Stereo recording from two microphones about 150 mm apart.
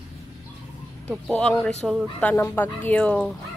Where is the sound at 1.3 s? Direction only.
10° left (ahead or behind).